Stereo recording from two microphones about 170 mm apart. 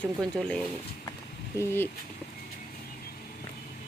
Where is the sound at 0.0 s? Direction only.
5° left (ahead or behind).